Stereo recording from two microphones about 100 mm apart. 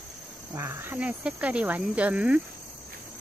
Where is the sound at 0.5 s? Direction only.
25° right (ahead or behind).